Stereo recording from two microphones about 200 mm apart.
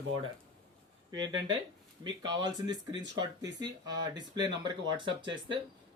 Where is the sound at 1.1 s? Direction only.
20° right (ahead or behind).